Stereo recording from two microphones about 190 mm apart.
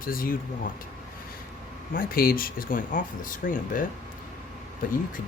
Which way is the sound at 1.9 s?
50° left (ahead or behind).